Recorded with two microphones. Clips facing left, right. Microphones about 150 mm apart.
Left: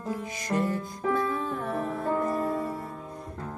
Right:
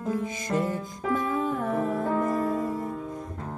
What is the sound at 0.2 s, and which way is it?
Music, 20° right (ahead or behind).